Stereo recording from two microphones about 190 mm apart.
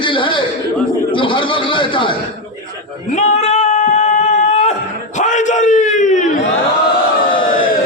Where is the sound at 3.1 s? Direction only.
35° left (ahead or behind).